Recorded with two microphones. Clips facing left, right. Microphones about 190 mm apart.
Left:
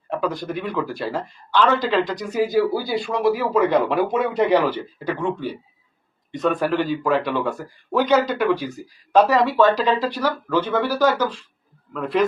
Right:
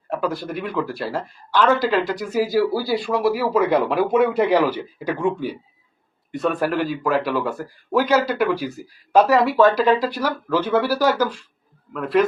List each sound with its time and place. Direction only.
0.1 s speech: 5° right (ahead or behind)